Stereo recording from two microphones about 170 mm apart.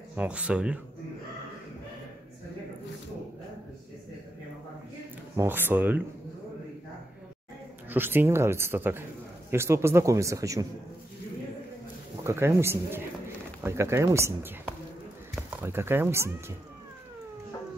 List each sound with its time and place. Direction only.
0.1 s a man's voice: 10° right (ahead or behind)
5.3 s a man's voice: 15° right (ahead or behind)
7.9 s a man's voice: 10° right (ahead or behind)
12.2 s a man's voice: 15° right (ahead or behind)
15.6 s a man's voice: 15° right (ahead or behind)